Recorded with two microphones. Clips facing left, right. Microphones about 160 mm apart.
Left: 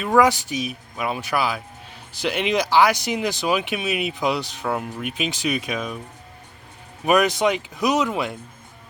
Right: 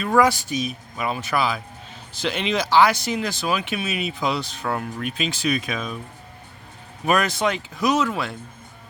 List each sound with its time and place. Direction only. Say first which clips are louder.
0.0 s speech: left 1 dB; 15° left (ahead or behind)
7.0 s speech: left 3 dB; 15° left (ahead or behind)